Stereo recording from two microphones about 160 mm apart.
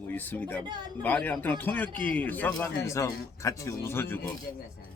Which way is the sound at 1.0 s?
10° left (ahead or behind).